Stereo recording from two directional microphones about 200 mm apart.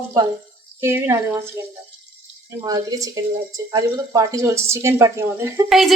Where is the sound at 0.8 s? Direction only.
10° right (ahead or behind).